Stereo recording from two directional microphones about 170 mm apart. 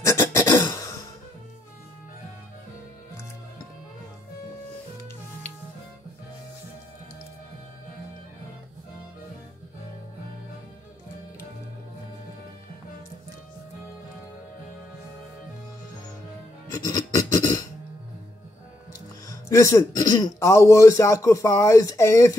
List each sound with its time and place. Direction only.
0.0 s throat clearing: 15° left (ahead or behind)
16.8 s a sound: 20° left (ahead or behind)
18.9 s speech: 20° left (ahead or behind)